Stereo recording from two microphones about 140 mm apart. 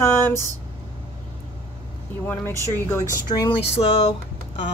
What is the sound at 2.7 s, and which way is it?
Speech, 15° left (ahead or behind).